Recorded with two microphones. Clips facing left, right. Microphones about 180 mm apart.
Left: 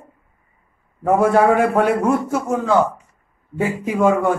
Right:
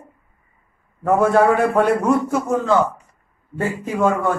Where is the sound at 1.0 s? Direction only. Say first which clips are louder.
Even; 10° left (ahead or behind).